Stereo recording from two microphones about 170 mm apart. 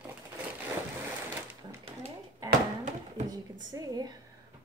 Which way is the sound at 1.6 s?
25° right (ahead or behind).